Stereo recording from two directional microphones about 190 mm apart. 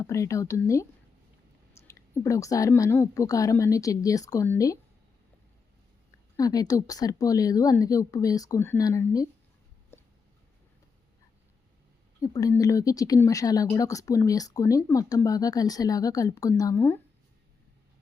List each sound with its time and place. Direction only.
0.0 s speech: 15° left (ahead or behind)
6.3 s speech: 20° left (ahead or behind)
9.9 s a sound: 10° left (ahead or behind)
12.2 s speech: 15° left (ahead or behind)